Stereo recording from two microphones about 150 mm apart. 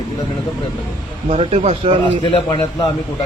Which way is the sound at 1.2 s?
40° right (ahead or behind).